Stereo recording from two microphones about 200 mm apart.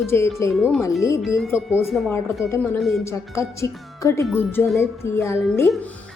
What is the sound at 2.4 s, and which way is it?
Speech, 10° left (ahead or behind).